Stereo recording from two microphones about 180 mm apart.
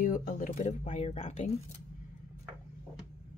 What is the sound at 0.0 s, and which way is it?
Speech, 50° left (ahead or behind).